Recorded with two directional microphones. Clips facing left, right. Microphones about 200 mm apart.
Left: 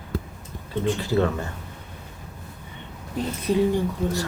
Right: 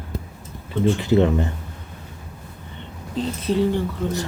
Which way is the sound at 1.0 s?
20° right (ahead or behind).